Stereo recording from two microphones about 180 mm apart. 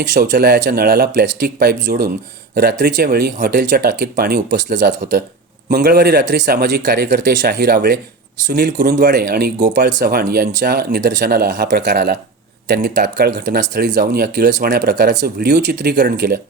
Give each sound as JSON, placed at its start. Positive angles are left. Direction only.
{"t": 0.0, "sound": "speech", "side_deg": -70}